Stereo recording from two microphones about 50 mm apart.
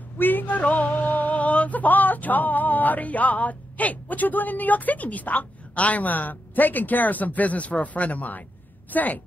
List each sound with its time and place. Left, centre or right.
0.2 s music: left
8.9 s a woman's voice: left